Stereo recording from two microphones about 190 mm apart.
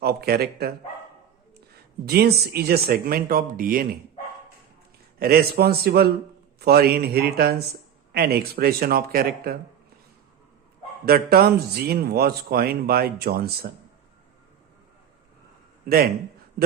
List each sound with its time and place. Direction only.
0.0 s a man's voice: 55° right (ahead or behind)
5.2 s a man's voice: 55° right (ahead or behind)
11.0 s a man's voice: 55° right (ahead or behind)